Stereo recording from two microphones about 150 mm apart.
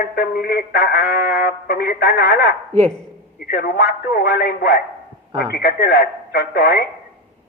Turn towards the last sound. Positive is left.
turn(degrees=90)